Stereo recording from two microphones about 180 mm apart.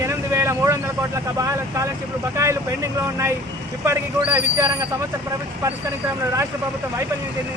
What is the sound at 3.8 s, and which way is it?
Speech, 15° right (ahead or behind).